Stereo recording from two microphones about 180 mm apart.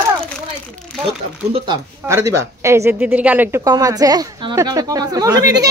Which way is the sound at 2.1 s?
15° right (ahead or behind).